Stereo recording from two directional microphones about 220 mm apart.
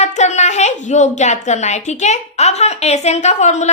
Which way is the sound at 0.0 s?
30° left (ahead or behind).